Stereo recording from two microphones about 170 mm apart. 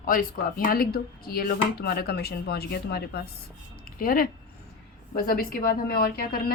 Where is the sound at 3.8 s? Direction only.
55° left (ahead or behind).